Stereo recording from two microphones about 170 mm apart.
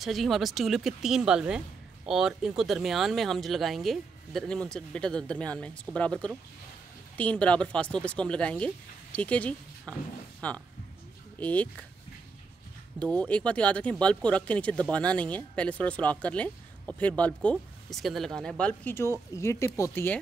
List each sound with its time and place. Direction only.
0.0 s speech: centre (ahead or behind)
13.0 s speech: 10° left (ahead or behind)